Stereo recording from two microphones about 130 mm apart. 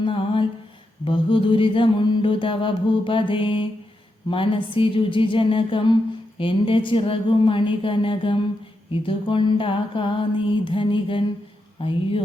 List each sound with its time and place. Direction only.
0.0 s music: 40° left (ahead or behind)
1.0 s mantra: 40° left (ahead or behind)
11.8 s speech: 45° left (ahead or behind)